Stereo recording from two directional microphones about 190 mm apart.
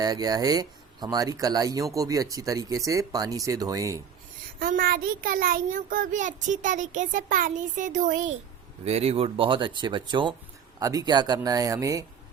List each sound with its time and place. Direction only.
0.0 s speech: 20° right (ahead or behind)
4.6 s a child's voice: 50° right (ahead or behind); by 12.0 s 15° right (ahead or behind)